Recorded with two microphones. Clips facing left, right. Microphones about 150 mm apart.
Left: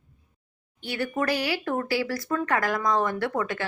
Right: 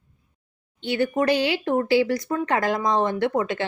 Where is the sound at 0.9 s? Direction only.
20° right (ahead or behind).